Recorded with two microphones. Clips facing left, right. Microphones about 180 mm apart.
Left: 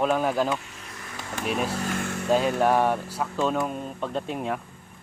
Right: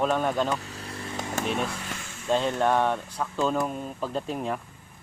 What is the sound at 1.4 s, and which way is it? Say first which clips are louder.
Speech: left 2 dB; 5° left (ahead or behind).